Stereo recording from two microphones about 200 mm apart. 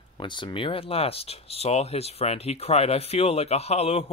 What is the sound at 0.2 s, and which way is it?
Speech, 25° left (ahead or behind).